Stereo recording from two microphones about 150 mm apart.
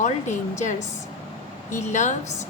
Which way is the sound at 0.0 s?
55° left (ahead or behind).